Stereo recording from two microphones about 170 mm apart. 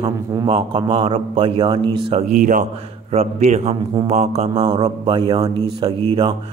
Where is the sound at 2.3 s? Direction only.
50° right (ahead or behind); by 5.9 s 25° right (ahead or behind).